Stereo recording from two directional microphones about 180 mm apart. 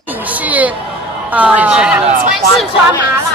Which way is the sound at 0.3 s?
10° right (ahead or behind).